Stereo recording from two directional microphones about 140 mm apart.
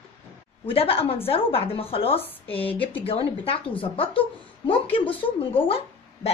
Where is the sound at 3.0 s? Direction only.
45° left (ahead or behind).